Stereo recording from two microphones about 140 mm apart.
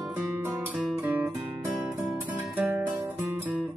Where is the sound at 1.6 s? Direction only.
15° right (ahead or behind).